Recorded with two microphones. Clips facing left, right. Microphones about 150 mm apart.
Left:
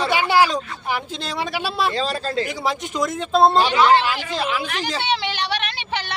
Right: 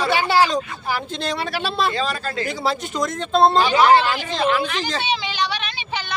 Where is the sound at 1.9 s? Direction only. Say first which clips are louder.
Left 1 dB; 35° left (ahead or behind).